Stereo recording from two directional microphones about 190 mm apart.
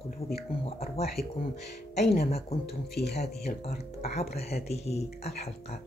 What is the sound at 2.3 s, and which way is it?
Speech, 30° left (ahead or behind).